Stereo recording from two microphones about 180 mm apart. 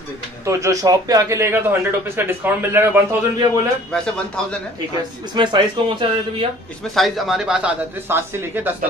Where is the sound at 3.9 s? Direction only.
5° left (ahead or behind).